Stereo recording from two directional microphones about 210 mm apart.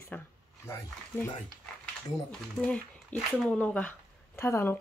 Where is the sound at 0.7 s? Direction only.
15° left (ahead or behind).